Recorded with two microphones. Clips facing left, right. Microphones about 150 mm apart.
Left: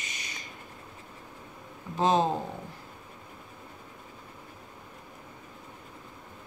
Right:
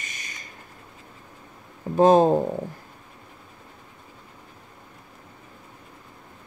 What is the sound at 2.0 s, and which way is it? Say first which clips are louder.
Speech: right 9 dB; 50° right (ahead or behind).